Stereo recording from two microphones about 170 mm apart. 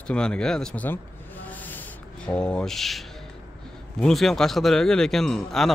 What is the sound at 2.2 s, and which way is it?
Speech, 5° left (ahead or behind).